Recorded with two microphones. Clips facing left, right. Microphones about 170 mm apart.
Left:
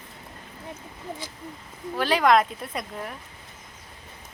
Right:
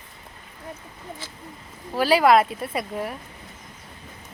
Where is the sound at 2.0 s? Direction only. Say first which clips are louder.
Right 3 dB; 10° right (ahead or behind).